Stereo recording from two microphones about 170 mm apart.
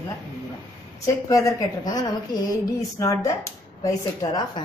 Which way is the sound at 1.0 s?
20° left (ahead or behind).